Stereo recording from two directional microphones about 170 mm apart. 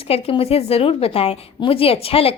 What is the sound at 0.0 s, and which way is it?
A woman's voice, 35° left (ahead or behind).